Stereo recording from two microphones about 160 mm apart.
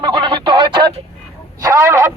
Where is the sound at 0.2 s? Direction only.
30° right (ahead or behind).